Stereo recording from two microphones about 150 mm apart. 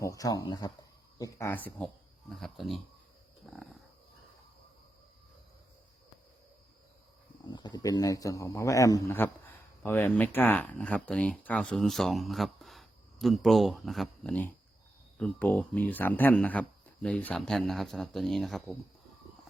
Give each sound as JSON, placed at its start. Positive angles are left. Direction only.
{"t": 0.0, "sound": "speech", "side_deg": 25}
{"t": 2.3, "sound": "speech", "side_deg": 0}
{"t": 3.4, "sound": "dog", "side_deg": 5}
{"t": 7.4, "sound": "speech", "side_deg": 30}